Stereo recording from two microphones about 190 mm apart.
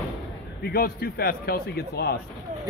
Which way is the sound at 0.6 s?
55° left (ahead or behind).